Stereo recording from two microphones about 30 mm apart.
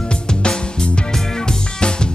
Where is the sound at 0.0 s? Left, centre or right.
Left.